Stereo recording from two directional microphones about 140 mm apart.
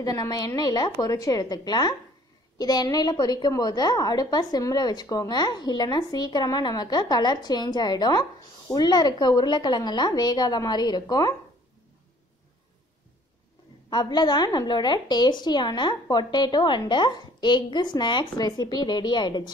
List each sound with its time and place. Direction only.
0.0 s a woman's voice: 25° left (ahead or behind)
13.8 s a woman's voice: 30° left (ahead or behind)